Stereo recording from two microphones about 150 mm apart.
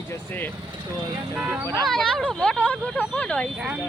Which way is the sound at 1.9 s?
Centre (ahead or behind).